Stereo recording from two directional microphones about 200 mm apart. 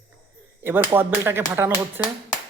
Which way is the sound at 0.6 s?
10° right (ahead or behind).